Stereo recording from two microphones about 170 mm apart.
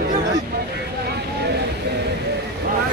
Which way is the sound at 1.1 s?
75° right (ahead or behind).